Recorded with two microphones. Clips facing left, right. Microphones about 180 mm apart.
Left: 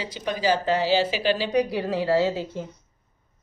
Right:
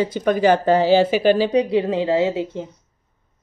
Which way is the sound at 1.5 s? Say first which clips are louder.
Right 5 dB; 25° right (ahead or behind).